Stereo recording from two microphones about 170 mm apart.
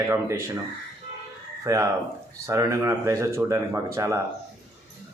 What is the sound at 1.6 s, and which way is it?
Speech, 20° right (ahead or behind).